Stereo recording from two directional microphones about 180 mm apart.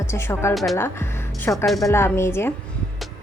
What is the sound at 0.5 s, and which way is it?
Speech, centre (ahead or behind).